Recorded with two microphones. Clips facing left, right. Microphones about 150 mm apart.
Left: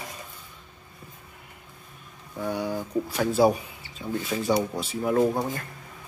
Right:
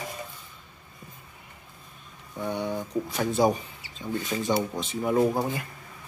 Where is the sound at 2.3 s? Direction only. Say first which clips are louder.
Left 1 dB; 5° left (ahead or behind).